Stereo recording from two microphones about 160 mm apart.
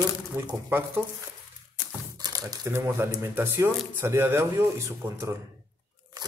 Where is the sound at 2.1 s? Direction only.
25° right (ahead or behind).